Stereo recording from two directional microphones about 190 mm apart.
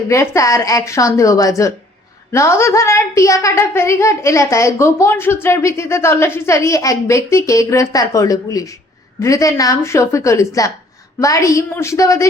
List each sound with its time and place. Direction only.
0.1 s a woman's voice: 15° left (ahead or behind)